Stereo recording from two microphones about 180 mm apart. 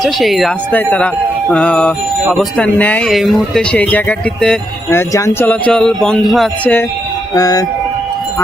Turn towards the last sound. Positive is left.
turn(degrees=20)  # may be behind; listen again after turning